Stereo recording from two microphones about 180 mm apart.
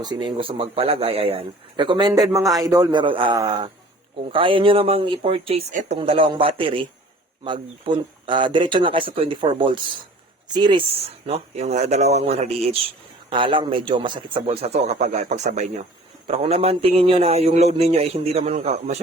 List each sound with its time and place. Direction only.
0.0 s a man's voice: 25° right (ahead or behind)